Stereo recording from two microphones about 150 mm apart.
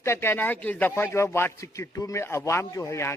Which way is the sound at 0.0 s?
15° left (ahead or behind).